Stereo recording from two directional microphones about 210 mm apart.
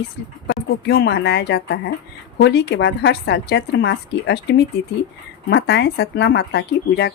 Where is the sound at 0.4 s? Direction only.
55° left (ahead or behind).